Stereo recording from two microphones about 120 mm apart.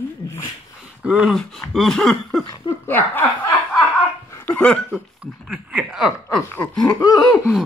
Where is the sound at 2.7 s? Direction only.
40° left (ahead or behind).